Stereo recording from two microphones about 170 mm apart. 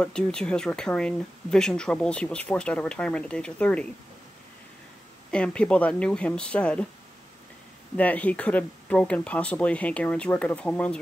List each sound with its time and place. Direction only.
0.0 s speech: 5° left (ahead or behind)
5.3 s speech: 5° left (ahead or behind)
7.9 s speech: 10° left (ahead or behind)